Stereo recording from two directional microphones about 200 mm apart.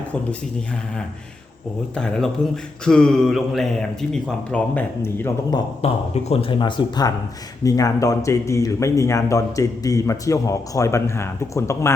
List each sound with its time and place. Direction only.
2.0 s a man's voice: 5° left (ahead or behind)
5.8 s speech: 30° left (ahead or behind); by 11.9 s 15° left (ahead or behind)